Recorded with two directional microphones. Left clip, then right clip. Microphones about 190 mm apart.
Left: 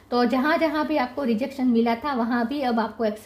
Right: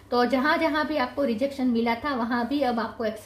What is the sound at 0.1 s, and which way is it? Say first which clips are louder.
A woman's voice: left 1 dB; 45° left (ahead or behind).